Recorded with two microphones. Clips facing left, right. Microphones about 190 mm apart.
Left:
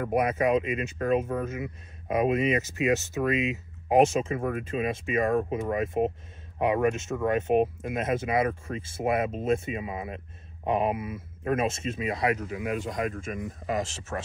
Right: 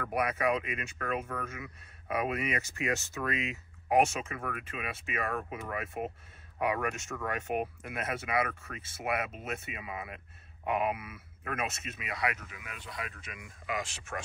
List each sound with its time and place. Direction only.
0.0 s speech: 25° left (ahead or behind); by 14.2 s 40° left (ahead or behind)